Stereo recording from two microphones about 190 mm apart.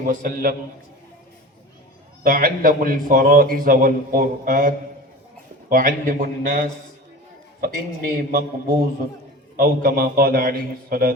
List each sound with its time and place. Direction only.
0.0 s a man's voice: 45° right (ahead or behind)
2.2 s a man's voice: 50° right (ahead or behind)